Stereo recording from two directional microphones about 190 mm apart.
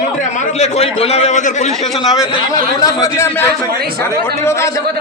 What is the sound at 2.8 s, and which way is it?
A man's voice, 15° left (ahead or behind).